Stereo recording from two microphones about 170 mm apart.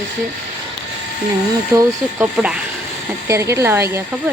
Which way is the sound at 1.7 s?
20° right (ahead or behind).